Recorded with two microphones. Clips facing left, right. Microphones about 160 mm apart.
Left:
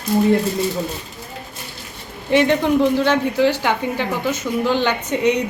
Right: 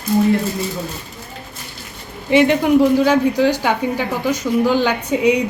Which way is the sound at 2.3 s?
10° right (ahead or behind).